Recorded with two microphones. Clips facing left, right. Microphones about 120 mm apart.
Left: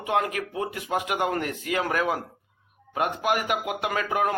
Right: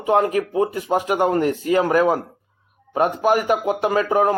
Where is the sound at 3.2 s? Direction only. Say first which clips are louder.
Right 8 dB; 35° right (ahead or behind).